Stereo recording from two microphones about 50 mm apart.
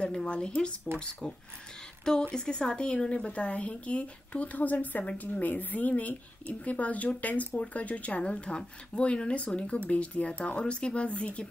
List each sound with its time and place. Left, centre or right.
0.0 s speech: centre